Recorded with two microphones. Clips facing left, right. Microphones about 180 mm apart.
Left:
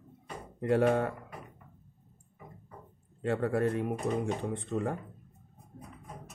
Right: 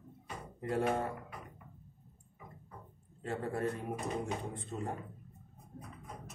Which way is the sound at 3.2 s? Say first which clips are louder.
Left 7 dB; 75° left (ahead or behind).